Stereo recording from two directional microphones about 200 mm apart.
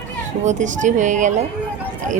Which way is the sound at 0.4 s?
40° right (ahead or behind).